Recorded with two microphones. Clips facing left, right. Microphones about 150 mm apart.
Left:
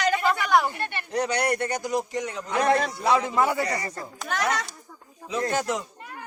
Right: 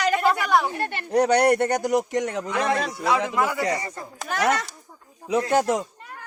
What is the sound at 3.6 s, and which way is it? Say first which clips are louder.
Speech: right 2 dB; 20° right (ahead or behind).